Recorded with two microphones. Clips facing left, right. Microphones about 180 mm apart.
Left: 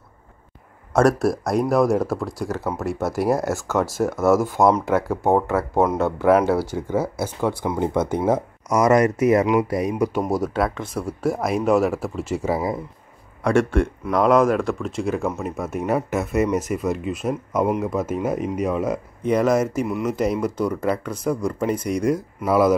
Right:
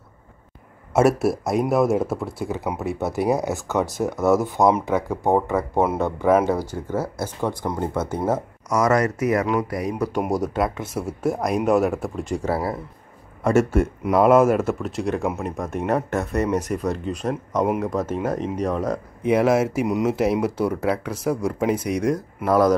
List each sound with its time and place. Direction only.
0.9 s speech: 5° right (ahead or behind)
5.8 s speech: 10° right (ahead or behind)
6.4 s speech: 10° left (ahead or behind)
10.3 s speech: centre (ahead or behind)
13.4 s speech: 5° right (ahead or behind)
19.2 s speech: 5° right (ahead or behind)